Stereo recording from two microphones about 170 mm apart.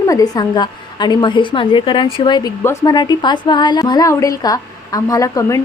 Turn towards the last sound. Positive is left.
turn(degrees=20)  # may be behind; listen again after turning